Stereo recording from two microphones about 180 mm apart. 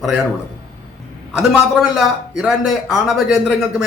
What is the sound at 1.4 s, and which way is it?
A man's voice, centre (ahead or behind).